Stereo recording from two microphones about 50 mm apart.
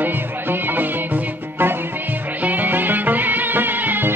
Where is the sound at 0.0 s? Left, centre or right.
Right.